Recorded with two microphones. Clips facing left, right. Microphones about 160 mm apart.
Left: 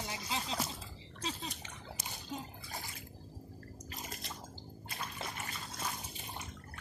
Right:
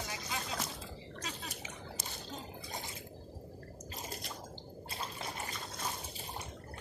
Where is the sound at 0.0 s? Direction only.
25° left (ahead or behind).